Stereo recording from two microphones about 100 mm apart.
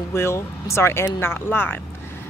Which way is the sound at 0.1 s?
25° left (ahead or behind).